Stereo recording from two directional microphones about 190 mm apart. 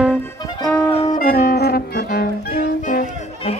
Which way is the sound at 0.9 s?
40° left (ahead or behind).